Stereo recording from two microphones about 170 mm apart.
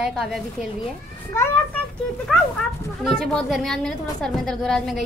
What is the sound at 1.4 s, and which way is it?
Speech, 15° left (ahead or behind).